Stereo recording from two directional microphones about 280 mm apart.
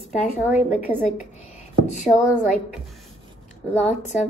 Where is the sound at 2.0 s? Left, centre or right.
Centre.